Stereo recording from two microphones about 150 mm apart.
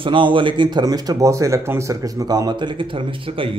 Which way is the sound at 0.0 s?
35° right (ahead or behind).